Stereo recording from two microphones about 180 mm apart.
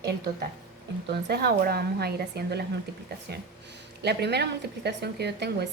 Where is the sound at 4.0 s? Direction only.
65° right (ahead or behind).